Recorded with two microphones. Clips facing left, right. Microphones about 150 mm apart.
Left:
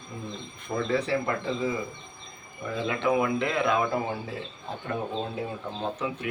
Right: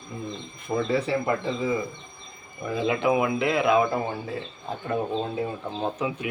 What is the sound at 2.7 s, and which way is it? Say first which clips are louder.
Speech: right 3 dB; 15° right (ahead or behind).